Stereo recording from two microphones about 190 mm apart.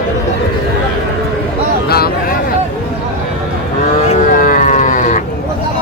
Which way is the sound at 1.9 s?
55° left (ahead or behind).